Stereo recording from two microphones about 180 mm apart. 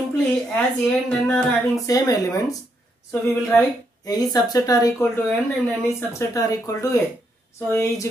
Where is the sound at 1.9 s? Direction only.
20° left (ahead or behind).